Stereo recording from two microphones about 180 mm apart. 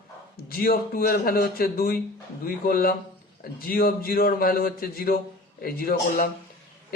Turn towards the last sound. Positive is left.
turn(degrees=55)  # may be behind; listen again after turning